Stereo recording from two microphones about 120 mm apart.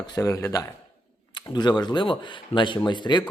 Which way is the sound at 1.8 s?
40° left (ahead or behind).